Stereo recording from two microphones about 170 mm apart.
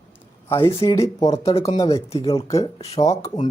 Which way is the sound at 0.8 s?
25° left (ahead or behind).